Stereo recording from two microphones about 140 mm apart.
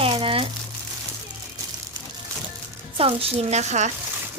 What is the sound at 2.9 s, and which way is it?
Speech, 45° right (ahead or behind).